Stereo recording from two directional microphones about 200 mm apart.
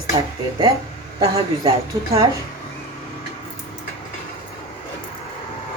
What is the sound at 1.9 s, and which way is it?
Speech, 15° right (ahead or behind).